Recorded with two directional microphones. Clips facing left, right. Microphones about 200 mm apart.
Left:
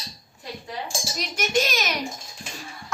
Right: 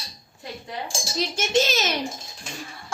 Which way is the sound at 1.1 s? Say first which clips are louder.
Right 3 dB; 30° right (ahead or behind).